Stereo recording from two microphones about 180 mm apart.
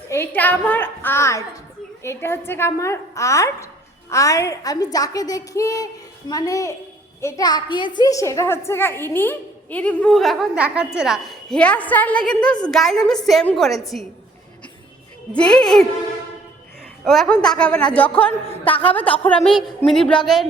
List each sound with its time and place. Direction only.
0.1 s a child's voice: 10° left (ahead or behind)
15.3 s a woman's voice: 5° left (ahead or behind)
17.1 s a child's voice: 5° left (ahead or behind)
18.4 s a woman's voice: 30° left (ahead or behind)
18.9 s a woman's voice: 10° left (ahead or behind)